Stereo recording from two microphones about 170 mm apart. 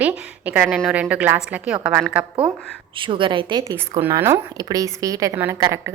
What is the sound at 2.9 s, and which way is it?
Speech, 30° right (ahead or behind).